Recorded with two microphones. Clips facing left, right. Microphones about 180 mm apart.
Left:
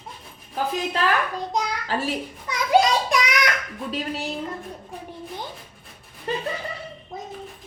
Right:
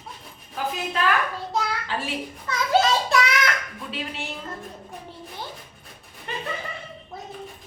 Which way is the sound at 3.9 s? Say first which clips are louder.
Left 4 dB; 40° left (ahead or behind).